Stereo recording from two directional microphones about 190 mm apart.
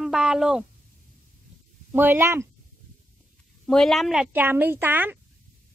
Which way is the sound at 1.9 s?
10° right (ahead or behind).